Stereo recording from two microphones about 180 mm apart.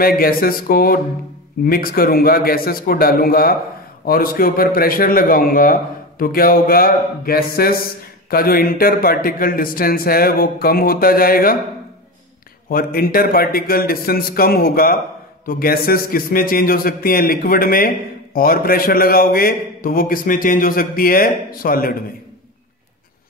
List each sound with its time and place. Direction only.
0.2 s a man's voice: 55° left (ahead or behind)
12.6 s a man's voice: 55° left (ahead or behind)